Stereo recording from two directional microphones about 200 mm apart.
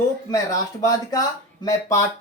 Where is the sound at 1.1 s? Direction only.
15° left (ahead or behind).